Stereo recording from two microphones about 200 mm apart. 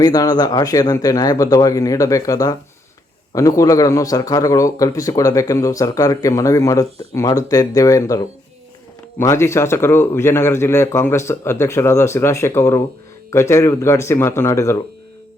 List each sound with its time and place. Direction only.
0.0 s a man's voice: 20° left (ahead or behind)